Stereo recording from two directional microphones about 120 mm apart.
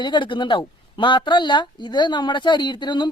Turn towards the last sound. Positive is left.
turn(degrees=40)  # may be behind; listen again after turning